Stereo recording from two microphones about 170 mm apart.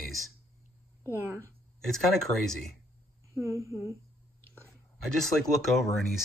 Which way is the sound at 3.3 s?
15° right (ahead or behind).